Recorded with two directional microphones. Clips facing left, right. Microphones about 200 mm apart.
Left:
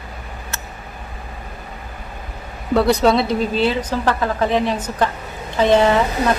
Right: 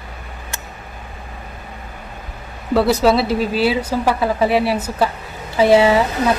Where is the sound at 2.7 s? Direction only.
Centre (ahead or behind).